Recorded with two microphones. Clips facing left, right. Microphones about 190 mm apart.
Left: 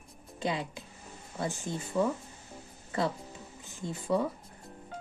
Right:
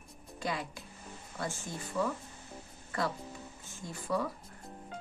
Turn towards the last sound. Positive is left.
turn(degrees=25)  # may be behind; listen again after turning